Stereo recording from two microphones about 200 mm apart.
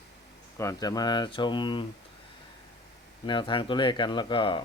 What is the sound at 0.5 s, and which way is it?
Speech, 15° left (ahead or behind).